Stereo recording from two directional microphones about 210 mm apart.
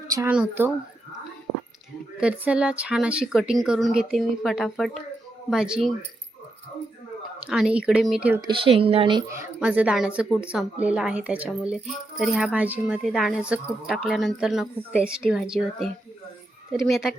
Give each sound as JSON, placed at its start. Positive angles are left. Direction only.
{"t": 0.1, "sound": "speech", "side_deg": -15}
{"t": 2.2, "sound": "speech", "side_deg": -5}
{"t": 7.4, "sound": "speech", "side_deg": -5}
{"t": 8.4, "sound": "speech", "side_deg": -25}
{"t": 9.6, "sound": "speech", "side_deg": -5}